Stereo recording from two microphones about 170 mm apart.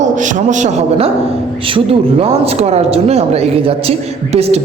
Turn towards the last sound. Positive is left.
turn(degrees=-40)  # may be behind; listen again after turning